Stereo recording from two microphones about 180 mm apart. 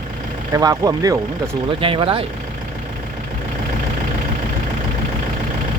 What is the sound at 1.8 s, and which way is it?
Speech, 30° right (ahead or behind).